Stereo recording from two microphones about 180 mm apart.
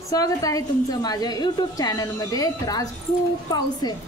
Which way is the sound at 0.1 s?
20° left (ahead or behind).